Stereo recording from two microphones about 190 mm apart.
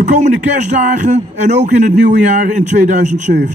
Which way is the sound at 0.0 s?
40° right (ahead or behind).